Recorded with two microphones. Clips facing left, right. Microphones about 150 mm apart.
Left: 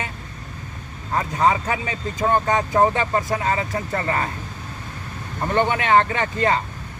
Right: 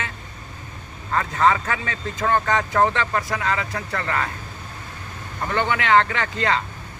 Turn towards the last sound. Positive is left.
turn(degrees=20)  # may be behind; listen again after turning